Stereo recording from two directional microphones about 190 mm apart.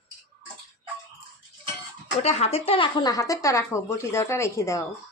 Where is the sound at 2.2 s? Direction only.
35° left (ahead or behind); by 4.9 s 15° left (ahead or behind).